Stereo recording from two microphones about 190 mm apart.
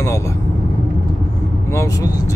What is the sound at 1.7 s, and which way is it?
Speech, 15° left (ahead or behind).